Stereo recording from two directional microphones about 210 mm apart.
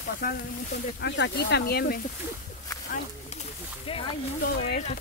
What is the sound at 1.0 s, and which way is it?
Speech, 55° left (ahead or behind).